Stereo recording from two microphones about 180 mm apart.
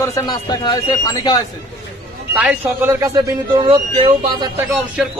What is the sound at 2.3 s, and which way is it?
Speech, 5° right (ahead or behind).